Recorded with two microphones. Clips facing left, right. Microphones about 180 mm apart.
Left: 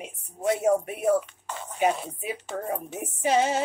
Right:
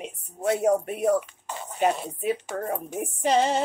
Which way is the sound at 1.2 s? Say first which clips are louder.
Even; 10° right (ahead or behind).